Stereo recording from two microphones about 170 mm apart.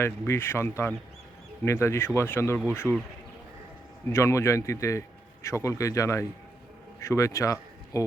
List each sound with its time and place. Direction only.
0.0 s a man's voice: 15° left (ahead or behind)
4.1 s a man's voice: 15° left (ahead or behind)